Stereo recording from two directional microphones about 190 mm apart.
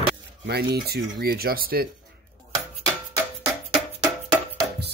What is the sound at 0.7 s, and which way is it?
Speech, 55° right (ahead or behind).